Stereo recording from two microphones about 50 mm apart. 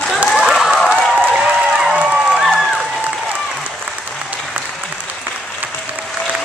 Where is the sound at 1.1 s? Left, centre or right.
Centre.